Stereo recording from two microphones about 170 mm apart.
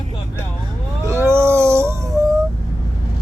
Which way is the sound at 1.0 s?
15° right (ahead or behind).